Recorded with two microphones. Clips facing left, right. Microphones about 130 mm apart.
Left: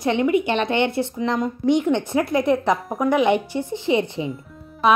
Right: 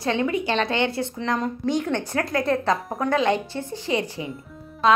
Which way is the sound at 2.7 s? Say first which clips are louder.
Left 4 dB; centre (ahead or behind).